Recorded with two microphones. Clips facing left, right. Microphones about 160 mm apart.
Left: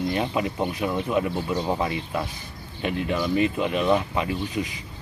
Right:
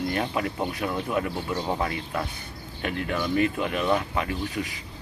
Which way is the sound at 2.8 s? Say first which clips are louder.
Left 3 dB; 25° left (ahead or behind).